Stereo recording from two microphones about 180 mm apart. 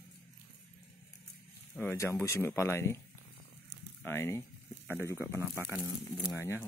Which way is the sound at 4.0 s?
15° left (ahead or behind).